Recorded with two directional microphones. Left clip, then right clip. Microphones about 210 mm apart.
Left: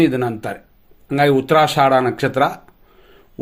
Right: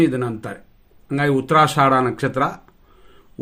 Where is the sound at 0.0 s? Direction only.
10° right (ahead or behind).